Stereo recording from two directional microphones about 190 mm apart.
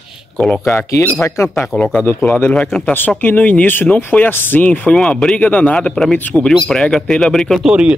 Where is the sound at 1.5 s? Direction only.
5° left (ahead or behind).